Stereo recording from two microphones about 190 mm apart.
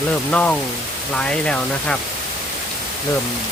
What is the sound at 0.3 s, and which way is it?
Speech, 5° left (ahead or behind).